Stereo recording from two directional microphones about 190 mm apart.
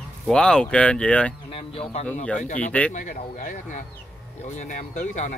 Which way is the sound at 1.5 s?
30° left (ahead or behind).